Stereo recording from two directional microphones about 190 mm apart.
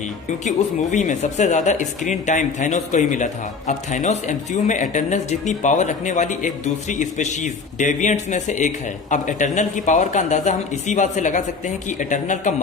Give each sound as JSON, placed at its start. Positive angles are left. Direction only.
{"t": 0.4, "sound": "speech", "side_deg": 40}